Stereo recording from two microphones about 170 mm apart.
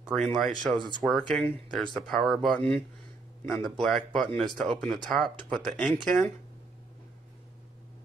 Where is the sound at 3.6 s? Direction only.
Centre (ahead or behind).